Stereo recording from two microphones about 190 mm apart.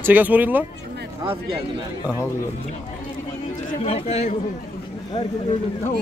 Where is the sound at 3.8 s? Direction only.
35° left (ahead or behind).